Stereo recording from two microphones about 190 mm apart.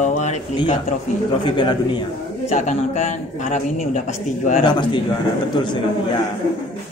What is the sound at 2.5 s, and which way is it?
Speech, 40° left (ahead or behind).